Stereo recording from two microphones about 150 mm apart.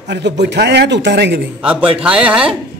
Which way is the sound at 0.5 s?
90° right.